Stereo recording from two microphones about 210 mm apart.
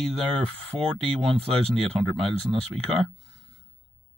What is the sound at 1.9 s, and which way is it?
Speech, 15° right (ahead or behind).